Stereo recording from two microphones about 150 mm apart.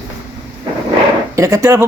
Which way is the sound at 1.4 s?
20° right (ahead or behind).